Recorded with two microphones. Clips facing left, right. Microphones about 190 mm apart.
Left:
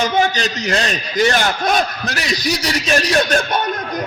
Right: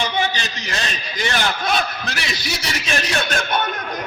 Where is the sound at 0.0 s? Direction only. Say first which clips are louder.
Left 6 dB; 45° left (ahead or behind).